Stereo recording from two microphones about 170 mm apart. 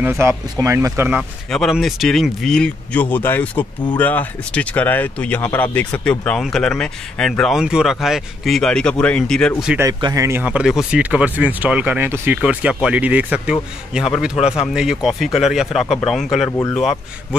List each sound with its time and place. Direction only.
0.0 s speech: 15° right (ahead or behind)
1.5 s speech: centre (ahead or behind)
9.8 s speech: 25° right (ahead or behind); by 16.4 s centre (ahead or behind)
16.4 s speech: 20° left (ahead or behind)
16.7 s speech: centre (ahead or behind)